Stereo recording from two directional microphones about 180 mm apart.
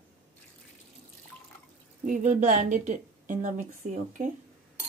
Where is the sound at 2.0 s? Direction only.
45° right (ahead or behind).